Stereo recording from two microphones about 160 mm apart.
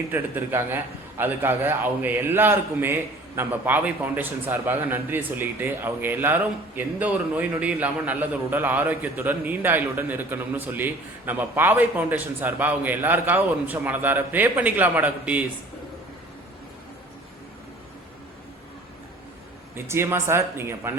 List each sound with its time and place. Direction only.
0.1 s a man's voice: 15° right (ahead or behind)
19.7 s a man's voice: 15° right (ahead or behind)